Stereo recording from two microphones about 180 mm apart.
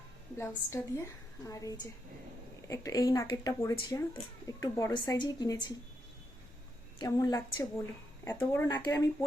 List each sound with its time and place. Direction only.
0.3 s a woman's voice: 15° left (ahead or behind)
7.0 s a woman's voice: 20° left (ahead or behind)